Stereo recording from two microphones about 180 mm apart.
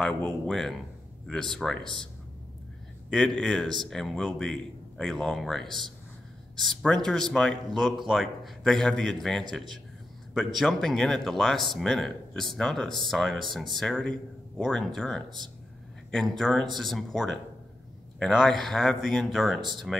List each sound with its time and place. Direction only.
0.0 s speech: 5° left (ahead or behind)
3.1 s speech: centre (ahead or behind)
15.2 s speech: 25° right (ahead or behind)
16.1 s speech: 5° left (ahead or behind)